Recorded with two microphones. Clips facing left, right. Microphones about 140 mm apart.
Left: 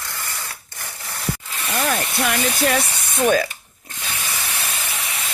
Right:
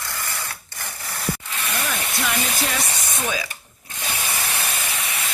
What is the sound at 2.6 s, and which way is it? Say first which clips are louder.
Speech: left 6 dB; 55° left (ahead or behind).